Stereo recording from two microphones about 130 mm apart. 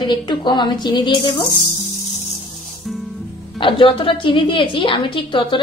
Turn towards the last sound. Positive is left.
turn(degrees=40)  # may be behind; listen again after turning